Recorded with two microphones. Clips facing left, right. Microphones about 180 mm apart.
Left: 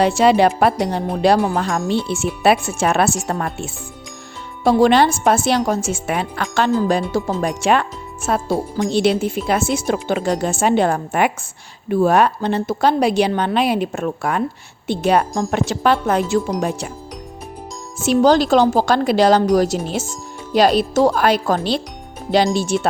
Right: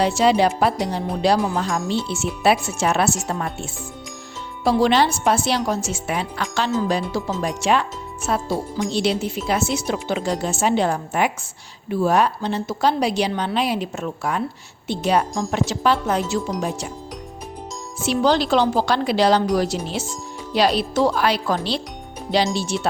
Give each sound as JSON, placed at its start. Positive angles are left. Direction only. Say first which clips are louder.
{"t": 0.0, "sound": "a woman's voice", "louder": "left 4 dB", "side_deg": 55}
{"t": 18.0, "sound": "speech", "louder": "left 5 dB", "side_deg": 45}